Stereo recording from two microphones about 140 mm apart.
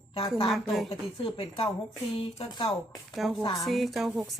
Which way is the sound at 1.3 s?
45° left (ahead or behind).